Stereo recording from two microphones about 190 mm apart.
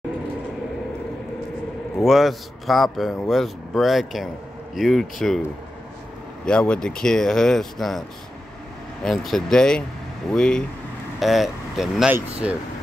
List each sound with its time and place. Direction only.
2.0 s a man's voice: centre (ahead or behind)
6.4 s a man's voice: 5° left (ahead or behind)
9.0 s a man's voice: centre (ahead or behind)